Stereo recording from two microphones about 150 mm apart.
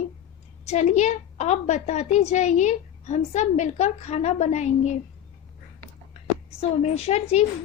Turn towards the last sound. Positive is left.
turn(degrees=45)  # may be behind; listen again after turning